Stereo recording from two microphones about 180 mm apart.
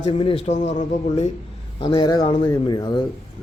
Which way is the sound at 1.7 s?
25° left (ahead or behind).